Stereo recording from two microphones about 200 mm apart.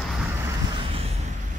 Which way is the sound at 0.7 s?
25° right (ahead or behind).